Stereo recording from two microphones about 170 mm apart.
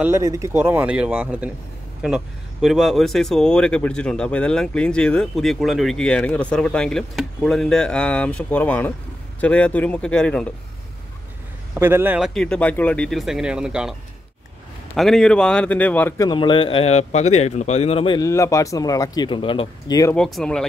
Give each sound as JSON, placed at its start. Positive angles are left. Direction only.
{"t": 0.0, "sound": "speech", "side_deg": -15}
{"t": 11.8, "sound": "speech", "side_deg": -10}
{"t": 12.4, "sound": "speech", "side_deg": 5}
{"t": 15.0, "sound": "speech", "side_deg": 0}
{"t": 16.3, "sound": "speech", "side_deg": 30}
{"t": 20.2, "sound": "speech", "side_deg": 0}